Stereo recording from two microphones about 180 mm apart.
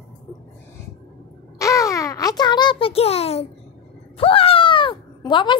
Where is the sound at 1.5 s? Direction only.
20° left (ahead or behind).